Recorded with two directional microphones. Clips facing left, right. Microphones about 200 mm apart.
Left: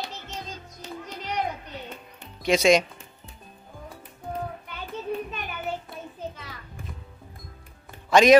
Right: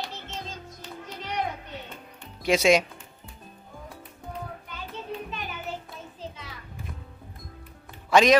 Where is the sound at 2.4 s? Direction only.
5° right (ahead or behind).